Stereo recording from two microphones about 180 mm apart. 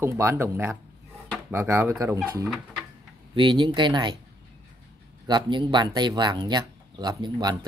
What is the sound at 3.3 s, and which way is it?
Speech, 25° right (ahead or behind).